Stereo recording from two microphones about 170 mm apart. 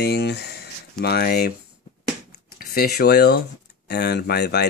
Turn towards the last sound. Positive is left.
turn(degrees=75)  # may be behind; listen again after turning